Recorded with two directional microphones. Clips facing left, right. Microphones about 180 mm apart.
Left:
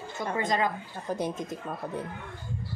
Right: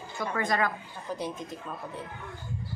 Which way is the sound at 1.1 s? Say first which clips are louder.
Left 4 dB; 45° left (ahead or behind).